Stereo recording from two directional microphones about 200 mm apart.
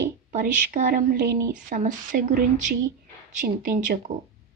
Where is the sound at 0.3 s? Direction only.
40° right (ahead or behind).